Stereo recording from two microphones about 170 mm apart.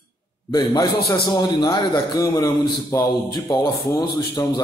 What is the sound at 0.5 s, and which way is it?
A man's voice, 25° left (ahead or behind).